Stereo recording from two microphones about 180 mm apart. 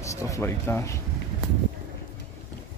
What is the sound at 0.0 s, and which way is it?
Speech, 15° left (ahead or behind).